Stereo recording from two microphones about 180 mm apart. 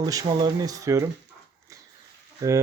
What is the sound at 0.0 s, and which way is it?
Speech, 20° right (ahead or behind).